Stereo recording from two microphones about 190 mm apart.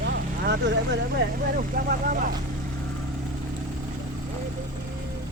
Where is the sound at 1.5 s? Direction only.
45° right (ahead or behind).